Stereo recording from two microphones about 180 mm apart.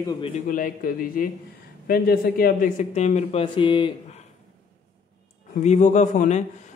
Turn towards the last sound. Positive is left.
turn(degrees=40)  # may be behind; listen again after turning